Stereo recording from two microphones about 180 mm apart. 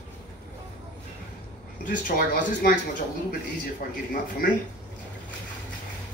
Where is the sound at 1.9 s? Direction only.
50° left (ahead or behind).